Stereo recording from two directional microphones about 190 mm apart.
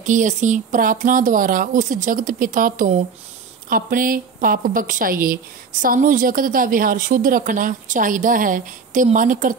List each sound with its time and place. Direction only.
0.0 s a woman's voice: 40° right (ahead or behind)